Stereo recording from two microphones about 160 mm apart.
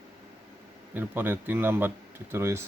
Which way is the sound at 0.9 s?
10° right (ahead or behind).